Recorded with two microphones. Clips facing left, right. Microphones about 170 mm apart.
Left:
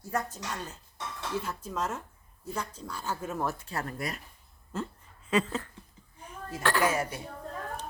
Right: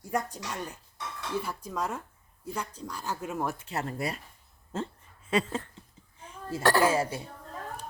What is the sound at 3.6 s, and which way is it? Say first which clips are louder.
Speech: right 2 dB; 25° right (ahead or behind).